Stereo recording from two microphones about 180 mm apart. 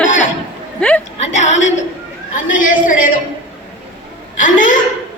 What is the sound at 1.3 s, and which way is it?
A woman's voice, 40° left (ahead or behind).